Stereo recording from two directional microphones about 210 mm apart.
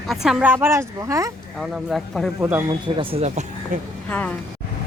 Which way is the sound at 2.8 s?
25° right (ahead or behind).